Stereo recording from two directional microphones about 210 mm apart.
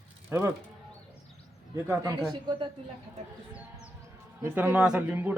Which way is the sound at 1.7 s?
10° right (ahead or behind).